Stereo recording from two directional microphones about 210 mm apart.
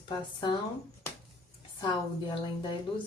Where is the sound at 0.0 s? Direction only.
20° left (ahead or behind).